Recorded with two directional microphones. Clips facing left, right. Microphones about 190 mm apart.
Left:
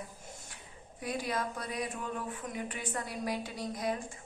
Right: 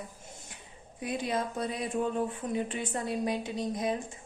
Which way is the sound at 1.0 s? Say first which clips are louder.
Right 3 dB; 20° right (ahead or behind).